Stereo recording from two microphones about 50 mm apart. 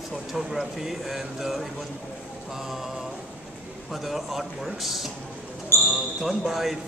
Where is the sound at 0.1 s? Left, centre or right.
Centre.